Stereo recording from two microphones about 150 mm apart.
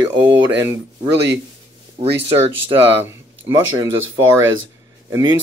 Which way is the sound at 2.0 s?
45° right (ahead or behind).